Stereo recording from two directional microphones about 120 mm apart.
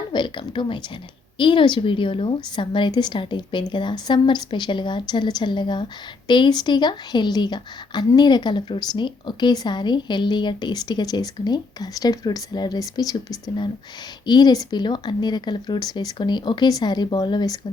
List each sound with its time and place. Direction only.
0.1 s a woman's voice: 40° left (ahead or behind)
14.3 s a woman's voice: 35° left (ahead or behind)